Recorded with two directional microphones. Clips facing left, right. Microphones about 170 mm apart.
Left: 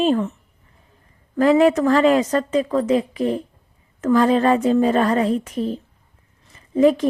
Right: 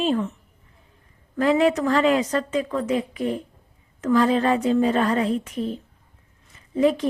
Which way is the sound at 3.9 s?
50° left (ahead or behind).